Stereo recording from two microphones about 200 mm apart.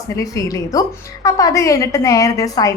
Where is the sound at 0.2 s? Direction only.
15° left (ahead or behind).